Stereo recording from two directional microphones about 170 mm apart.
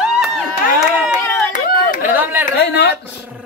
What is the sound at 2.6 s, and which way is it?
Speech, 75° left (ahead or behind).